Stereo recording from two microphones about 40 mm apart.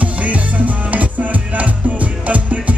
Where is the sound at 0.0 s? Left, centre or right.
Right.